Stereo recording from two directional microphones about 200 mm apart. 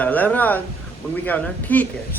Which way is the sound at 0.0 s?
10° left (ahead or behind).